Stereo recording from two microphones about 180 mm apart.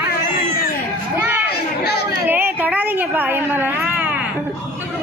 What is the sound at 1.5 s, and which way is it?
Chatter, 65° left (ahead or behind).